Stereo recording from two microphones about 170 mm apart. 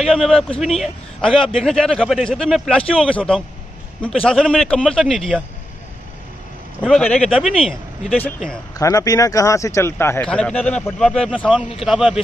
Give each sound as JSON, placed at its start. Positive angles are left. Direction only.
{"t": 0.0, "sound": "a man's voice", "side_deg": 0}
{"t": 6.8, "sound": "a man's voice", "side_deg": 0}
{"t": 8.7, "sound": "speech", "side_deg": 20}
{"t": 10.3, "sound": "a man's voice", "side_deg": 5}